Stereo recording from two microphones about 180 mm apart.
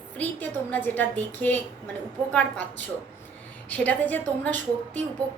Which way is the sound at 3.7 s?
10° left (ahead or behind).